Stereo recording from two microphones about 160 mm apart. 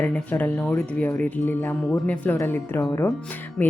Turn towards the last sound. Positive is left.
turn(degrees=5)  # may be behind; listen again after turning